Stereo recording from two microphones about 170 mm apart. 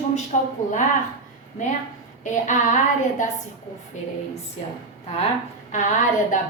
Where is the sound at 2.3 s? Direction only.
45° left (ahead or behind).